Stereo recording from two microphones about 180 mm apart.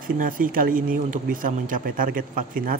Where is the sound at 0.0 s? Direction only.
50° right (ahead or behind).